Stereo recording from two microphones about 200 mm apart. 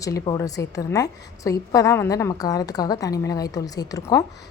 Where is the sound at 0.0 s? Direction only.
15° left (ahead or behind).